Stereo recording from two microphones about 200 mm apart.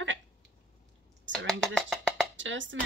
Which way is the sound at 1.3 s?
70° right (ahead or behind).